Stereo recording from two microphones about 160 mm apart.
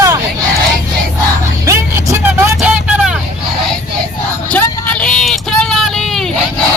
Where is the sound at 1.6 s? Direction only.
15° right (ahead or behind).